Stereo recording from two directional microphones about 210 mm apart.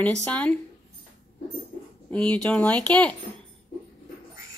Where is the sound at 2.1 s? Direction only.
5° left (ahead or behind).